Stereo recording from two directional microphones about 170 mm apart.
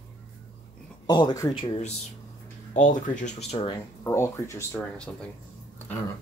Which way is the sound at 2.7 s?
50° left (ahead or behind).